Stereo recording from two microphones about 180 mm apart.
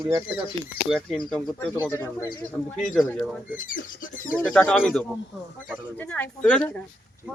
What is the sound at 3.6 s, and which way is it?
Speech, 50° left (ahead or behind).